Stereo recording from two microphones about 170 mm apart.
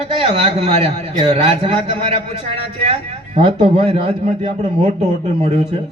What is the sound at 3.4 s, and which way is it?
A man's voice, 35° right (ahead or behind).